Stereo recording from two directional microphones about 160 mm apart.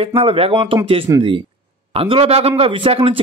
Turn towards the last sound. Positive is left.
turn(degrees=-35)  # may be behind; listen again after turning